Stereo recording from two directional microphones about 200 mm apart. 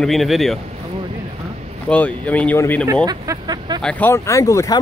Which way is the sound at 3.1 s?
20° right (ahead or behind).